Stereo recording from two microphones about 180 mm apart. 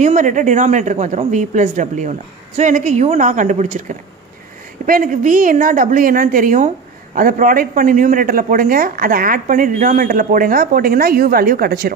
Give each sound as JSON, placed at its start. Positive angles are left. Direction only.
{"t": 0.0, "sound": "speech", "side_deg": -45}
{"t": 4.8, "sound": "speech", "side_deg": -50}